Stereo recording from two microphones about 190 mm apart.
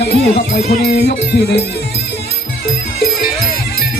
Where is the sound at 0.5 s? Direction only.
60° left (ahead or behind).